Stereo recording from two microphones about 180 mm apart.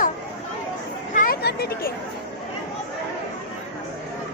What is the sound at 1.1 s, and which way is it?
Chatter, 45° left (ahead or behind).